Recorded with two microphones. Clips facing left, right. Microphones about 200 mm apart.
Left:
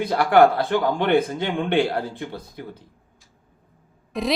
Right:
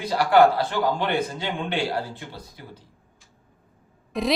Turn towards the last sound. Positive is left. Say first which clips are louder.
# even
turn(degrees=0)  # may be behind; listen again after turning